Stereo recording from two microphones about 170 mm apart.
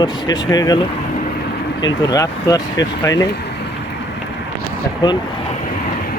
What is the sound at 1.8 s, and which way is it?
Speech, 25° left (ahead or behind).